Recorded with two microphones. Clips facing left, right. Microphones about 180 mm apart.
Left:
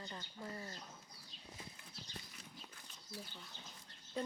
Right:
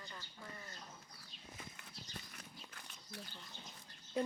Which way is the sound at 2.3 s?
65° right (ahead or behind).